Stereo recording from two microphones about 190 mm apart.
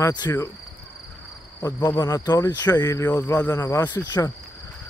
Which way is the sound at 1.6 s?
15° left (ahead or behind).